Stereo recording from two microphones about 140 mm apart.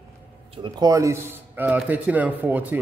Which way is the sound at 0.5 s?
35° right (ahead or behind).